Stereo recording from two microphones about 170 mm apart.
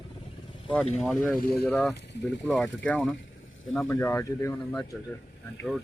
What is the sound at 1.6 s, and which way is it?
Speech, 5° left (ahead or behind).